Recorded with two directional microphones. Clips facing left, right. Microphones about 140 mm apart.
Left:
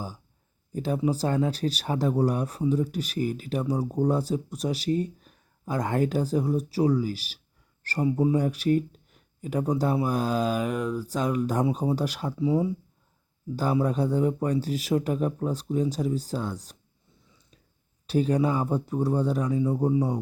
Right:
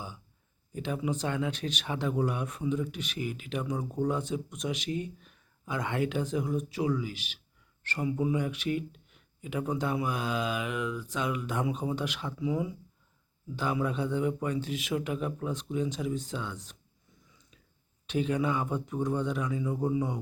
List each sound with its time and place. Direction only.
0.7 s speech: 35° left (ahead or behind)
18.0 s speech: 35° left (ahead or behind)